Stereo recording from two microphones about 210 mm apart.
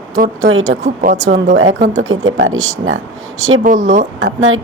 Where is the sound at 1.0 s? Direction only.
35° right (ahead or behind).